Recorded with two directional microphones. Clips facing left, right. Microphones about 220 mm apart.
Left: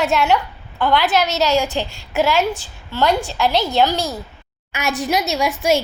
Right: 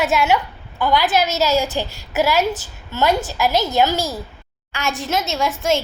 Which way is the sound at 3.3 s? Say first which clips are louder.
Even; 5° right (ahead or behind).